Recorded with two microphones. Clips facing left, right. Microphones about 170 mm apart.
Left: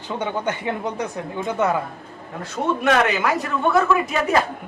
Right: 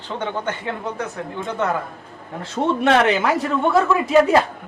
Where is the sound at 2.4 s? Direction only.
30° right (ahead or behind).